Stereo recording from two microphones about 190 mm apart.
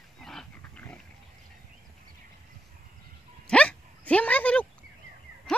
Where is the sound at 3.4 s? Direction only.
5° left (ahead or behind).